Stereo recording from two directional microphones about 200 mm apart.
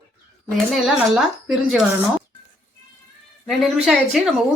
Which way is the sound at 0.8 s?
Centre (ahead or behind).